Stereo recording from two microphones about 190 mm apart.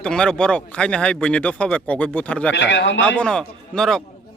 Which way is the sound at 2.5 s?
70° left (ahead or behind).